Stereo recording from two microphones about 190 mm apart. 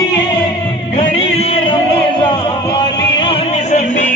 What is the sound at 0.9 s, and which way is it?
Music, 30° left (ahead or behind).